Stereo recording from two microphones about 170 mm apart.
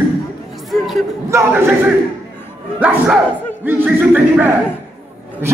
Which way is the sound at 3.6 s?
10° right (ahead or behind).